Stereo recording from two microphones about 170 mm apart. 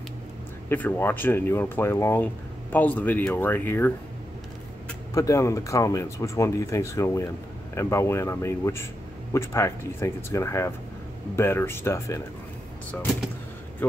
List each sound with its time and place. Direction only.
0.7 s speech: 10° left (ahead or behind)
5.1 s speech: 20° left (ahead or behind)